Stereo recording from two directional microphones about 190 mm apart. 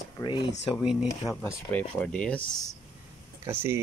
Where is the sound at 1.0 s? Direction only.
15° left (ahead or behind).